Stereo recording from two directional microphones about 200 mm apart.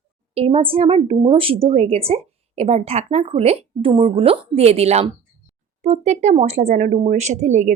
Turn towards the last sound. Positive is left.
turn(degrees=-35)  # may be behind; listen again after turning